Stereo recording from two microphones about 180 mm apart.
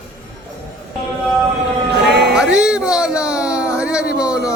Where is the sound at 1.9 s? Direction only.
70° right (ahead or behind).